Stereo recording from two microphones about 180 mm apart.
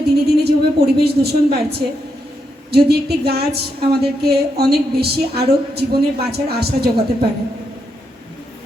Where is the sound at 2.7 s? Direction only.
60° right (ahead or behind).